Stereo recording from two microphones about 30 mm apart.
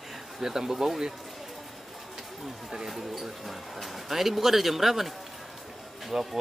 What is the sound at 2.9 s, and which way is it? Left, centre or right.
Speech, centre.